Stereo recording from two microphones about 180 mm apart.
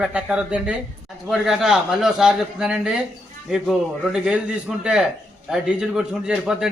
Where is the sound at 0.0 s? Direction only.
5° right (ahead or behind).